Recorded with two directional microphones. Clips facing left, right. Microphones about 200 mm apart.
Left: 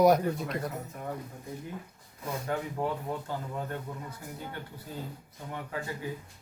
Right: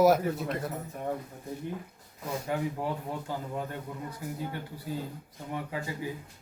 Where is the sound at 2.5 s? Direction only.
10° right (ahead or behind).